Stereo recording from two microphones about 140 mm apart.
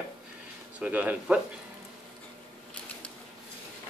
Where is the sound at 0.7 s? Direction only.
10° right (ahead or behind).